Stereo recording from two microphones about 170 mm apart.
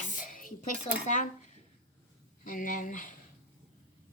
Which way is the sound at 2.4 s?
50° left (ahead or behind).